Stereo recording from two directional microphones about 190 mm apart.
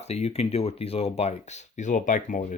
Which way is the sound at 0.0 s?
35° left (ahead or behind).